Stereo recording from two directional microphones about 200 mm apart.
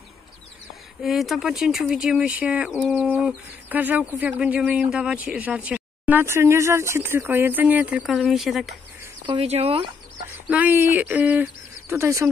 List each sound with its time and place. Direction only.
1.0 s speech: centre (ahead or behind)
9.2 s speech: 30° right (ahead or behind)
10.5 s speech: 10° right (ahead or behind)